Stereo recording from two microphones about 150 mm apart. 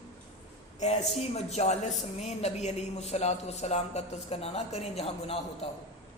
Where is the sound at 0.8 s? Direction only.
45° left (ahead or behind).